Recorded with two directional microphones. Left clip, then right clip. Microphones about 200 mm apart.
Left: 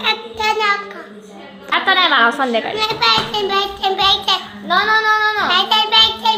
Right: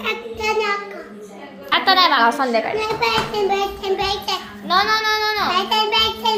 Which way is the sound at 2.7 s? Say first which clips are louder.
Left 4 dB; 5° left (ahead or behind).